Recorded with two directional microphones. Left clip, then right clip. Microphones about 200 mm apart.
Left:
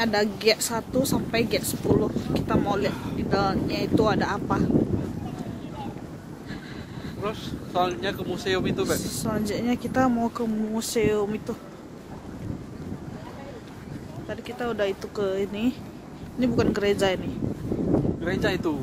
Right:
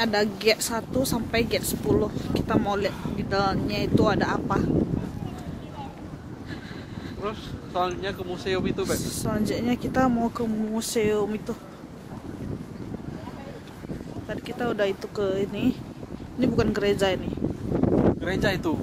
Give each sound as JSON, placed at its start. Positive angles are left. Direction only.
{"t": 0.0, "sound": "speech", "side_deg": -5}
{"t": 7.2, "sound": "speech", "side_deg": 65}
{"t": 8.9, "sound": "speech", "side_deg": -5}
{"t": 14.3, "sound": "speech", "side_deg": -5}
{"t": 18.2, "sound": "speech", "side_deg": -55}